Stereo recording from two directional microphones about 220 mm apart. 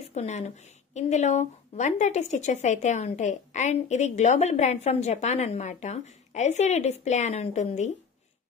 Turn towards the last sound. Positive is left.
turn(degrees=30)  # may be behind; listen again after turning